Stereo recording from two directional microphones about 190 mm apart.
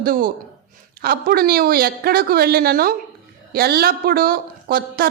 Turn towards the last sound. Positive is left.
turn(degrees=-50)  # may be behind; listen again after turning